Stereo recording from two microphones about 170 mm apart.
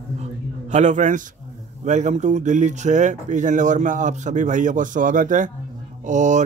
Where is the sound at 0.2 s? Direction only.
45° right (ahead or behind).